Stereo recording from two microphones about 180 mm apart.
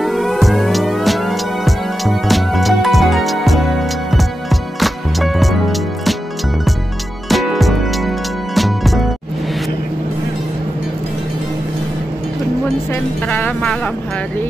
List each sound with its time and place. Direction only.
0.0 s music: centre (ahead or behind)
7.2 s music: centre (ahead or behind)
13.3 s speech: 5° left (ahead or behind)